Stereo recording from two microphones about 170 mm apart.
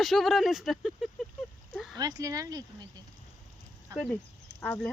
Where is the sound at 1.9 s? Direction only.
20° right (ahead or behind).